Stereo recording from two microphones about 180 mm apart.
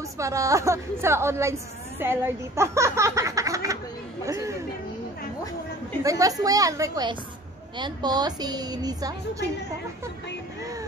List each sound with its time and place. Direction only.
0.2 s a woman's voice: 15° right (ahead or behind)
4.3 s music: 15° right (ahead or behind)
6.0 s a woman's voice: 20° right (ahead or behind)